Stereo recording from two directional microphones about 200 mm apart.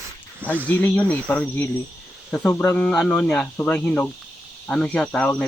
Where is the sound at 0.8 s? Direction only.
5° left (ahead or behind).